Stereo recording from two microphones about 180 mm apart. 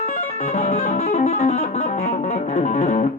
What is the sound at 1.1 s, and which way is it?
Music, 40° left (ahead or behind).